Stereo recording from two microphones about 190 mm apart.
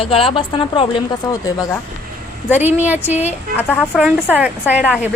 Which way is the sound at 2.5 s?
10° right (ahead or behind).